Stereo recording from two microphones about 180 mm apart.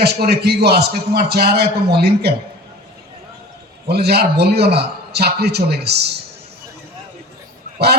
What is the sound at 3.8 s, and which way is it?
A man's voice, 60° right (ahead or behind).